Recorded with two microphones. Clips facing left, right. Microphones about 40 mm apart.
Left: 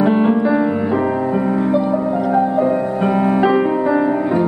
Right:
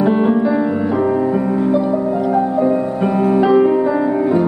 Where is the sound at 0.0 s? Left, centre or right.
Centre.